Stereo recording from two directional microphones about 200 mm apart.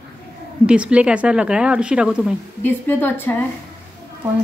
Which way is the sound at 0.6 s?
5° right (ahead or behind).